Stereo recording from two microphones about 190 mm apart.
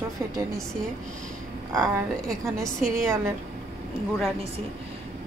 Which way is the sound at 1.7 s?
20° right (ahead or behind).